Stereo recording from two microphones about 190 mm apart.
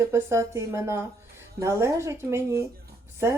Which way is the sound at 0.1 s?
15° right (ahead or behind).